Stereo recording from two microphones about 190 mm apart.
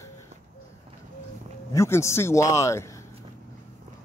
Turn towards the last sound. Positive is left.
turn(degrees=15)  # may be behind; listen again after turning